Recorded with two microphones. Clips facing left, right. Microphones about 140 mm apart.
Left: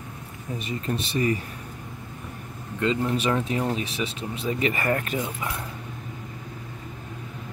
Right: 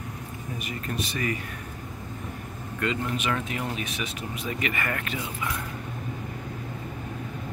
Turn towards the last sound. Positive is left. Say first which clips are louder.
# left 3 dB
turn(degrees=30)  # may be behind; listen again after turning